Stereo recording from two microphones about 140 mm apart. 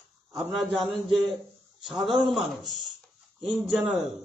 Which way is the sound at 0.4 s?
Centre (ahead or behind).